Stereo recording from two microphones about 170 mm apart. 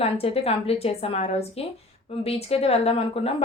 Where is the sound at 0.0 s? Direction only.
35° left (ahead or behind).